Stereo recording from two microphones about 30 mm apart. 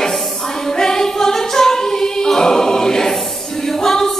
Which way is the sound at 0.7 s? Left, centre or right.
Centre.